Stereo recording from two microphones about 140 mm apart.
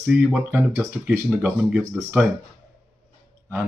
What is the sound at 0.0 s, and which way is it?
Speech, 10° right (ahead or behind).